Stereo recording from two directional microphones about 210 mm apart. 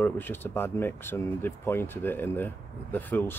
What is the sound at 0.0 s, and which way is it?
Speech, 10° left (ahead or behind).